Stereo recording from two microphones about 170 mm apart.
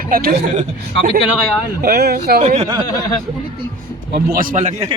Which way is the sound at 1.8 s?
70° right (ahead or behind).